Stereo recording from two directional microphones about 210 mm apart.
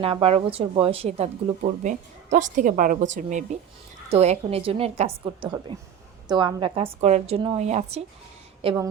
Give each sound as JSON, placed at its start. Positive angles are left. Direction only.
{"t": 0.0, "sound": "a woman's voice", "side_deg": -25}